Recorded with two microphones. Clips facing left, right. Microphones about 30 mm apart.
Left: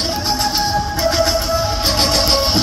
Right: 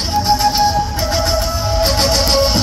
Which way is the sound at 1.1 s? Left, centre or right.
Centre.